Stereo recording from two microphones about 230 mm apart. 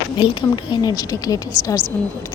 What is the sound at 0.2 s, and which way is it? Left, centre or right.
A woman's voice, centre.